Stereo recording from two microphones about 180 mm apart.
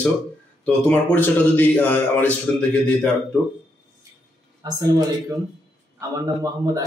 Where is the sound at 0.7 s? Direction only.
10° left (ahead or behind).